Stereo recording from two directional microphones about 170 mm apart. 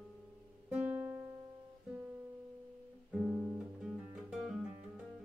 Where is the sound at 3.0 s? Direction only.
5° right (ahead or behind).